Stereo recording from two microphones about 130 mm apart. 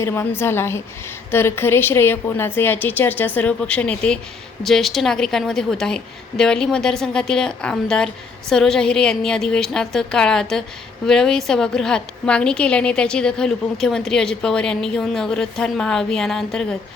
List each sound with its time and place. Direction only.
0.0 s a woman's voice: 20° left (ahead or behind)